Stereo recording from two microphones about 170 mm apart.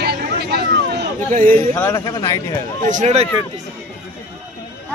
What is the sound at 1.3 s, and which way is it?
Speech, 55° right (ahead or behind).